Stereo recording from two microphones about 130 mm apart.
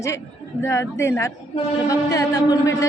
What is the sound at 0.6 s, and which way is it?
A woman's voice, 20° left (ahead or behind).